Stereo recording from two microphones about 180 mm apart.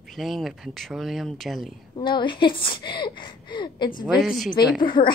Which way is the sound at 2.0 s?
25° left (ahead or behind).